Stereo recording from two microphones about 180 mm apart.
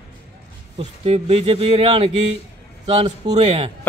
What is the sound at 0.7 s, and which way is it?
Speech, 35° right (ahead or behind).